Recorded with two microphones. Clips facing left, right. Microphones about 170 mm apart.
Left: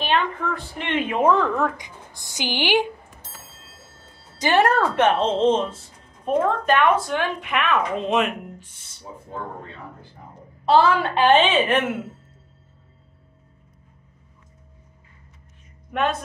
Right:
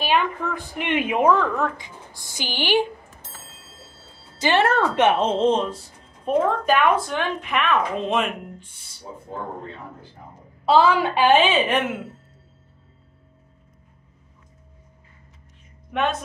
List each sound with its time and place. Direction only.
0.0 s a woman's voice: 10° right (ahead or behind)
1.2 s a woman's voice: centre (ahead or behind)
2.2 s a woman's voice: 15° left (ahead or behind)
4.4 s a woman's voice: 10° left (ahead or behind)
5.0 s a woman's voice: 5° right (ahead or behind)
10.6 s a woman's voice: 5° right (ahead or behind)
15.9 s speech: centre (ahead or behind)